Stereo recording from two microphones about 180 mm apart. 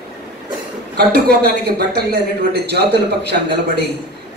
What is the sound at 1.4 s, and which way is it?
A man's voice, 65° right (ahead or behind).